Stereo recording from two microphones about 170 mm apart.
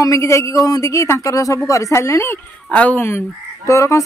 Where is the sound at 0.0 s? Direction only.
15° left (ahead or behind).